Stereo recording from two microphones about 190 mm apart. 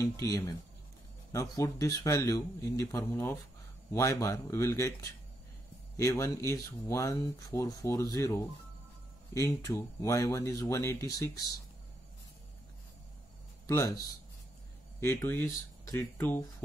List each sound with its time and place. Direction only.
0.0 s speech: 15° left (ahead or behind)
5.9 s speech: 15° left (ahead or behind)
9.3 s speech: 15° left (ahead or behind)
13.7 s speech: 15° left (ahead or behind)
15.0 s speech: 10° left (ahead or behind)